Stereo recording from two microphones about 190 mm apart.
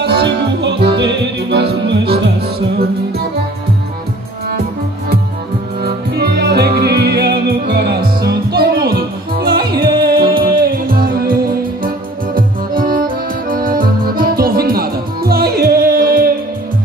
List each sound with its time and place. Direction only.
0.0 s music: 60° right (ahead or behind)
5.8 s music: 55° right (ahead or behind)
12.4 s accordion: 50° right (ahead or behind)